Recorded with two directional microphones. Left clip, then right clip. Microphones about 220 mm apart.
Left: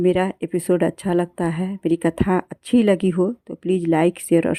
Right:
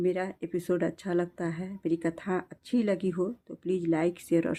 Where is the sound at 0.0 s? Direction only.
30° left (ahead or behind).